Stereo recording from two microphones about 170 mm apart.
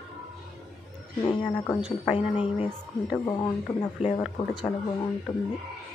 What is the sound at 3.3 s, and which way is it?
Speech, 25° left (ahead or behind).